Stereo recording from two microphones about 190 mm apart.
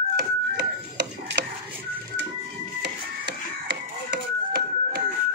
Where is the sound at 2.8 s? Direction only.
60° right (ahead or behind).